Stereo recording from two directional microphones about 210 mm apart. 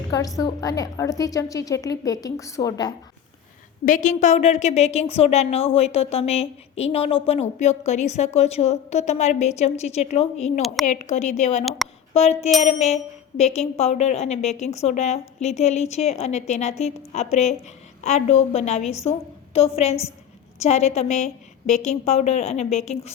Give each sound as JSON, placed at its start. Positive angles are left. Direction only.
{"t": 0.1, "sound": "a woman's voice", "side_deg": 15}
{"t": 3.8, "sound": "speech", "side_deg": 35}
{"t": 11.8, "sound": "a woman's voice", "side_deg": 0}
{"t": 12.1, "sound": "a woman's voice", "side_deg": 30}